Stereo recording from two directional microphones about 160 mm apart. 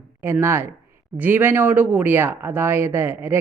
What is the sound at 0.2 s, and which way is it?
Speech, 15° right (ahead or behind).